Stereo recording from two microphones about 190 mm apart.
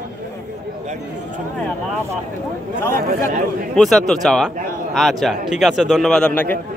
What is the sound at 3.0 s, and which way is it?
Speech, 55° right (ahead or behind).